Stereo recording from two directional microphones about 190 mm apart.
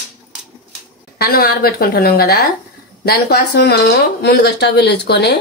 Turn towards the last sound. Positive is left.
turn(degrees=60)  # may be behind; listen again after turning